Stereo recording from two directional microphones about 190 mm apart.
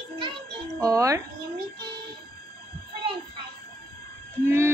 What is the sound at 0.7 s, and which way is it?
Speech, 20° right (ahead or behind).